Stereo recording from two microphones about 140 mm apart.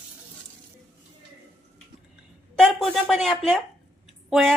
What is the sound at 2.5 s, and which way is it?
Speech, centre (ahead or behind).